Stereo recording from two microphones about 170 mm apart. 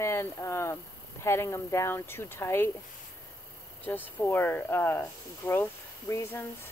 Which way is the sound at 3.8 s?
10° left (ahead or behind).